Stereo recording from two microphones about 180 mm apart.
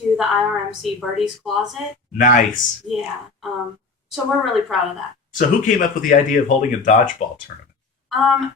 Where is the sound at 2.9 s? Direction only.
Centre (ahead or behind).